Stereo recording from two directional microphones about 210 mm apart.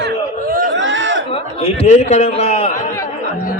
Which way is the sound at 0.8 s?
60° right (ahead or behind).